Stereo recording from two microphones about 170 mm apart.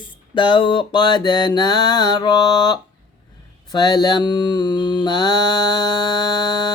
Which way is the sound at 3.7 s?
25° left (ahead or behind).